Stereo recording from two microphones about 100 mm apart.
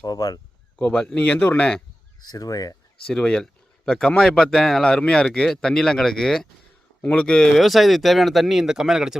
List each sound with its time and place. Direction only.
0.0 s speech: 40° left (ahead or behind)
0.8 s speech: 15° left (ahead or behind)
2.2 s speech: 40° left (ahead or behind)
3.1 s speech: 5° left (ahead or behind)